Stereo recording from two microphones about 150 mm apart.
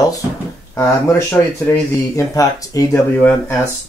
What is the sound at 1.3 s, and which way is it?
Speech, 20° left (ahead or behind).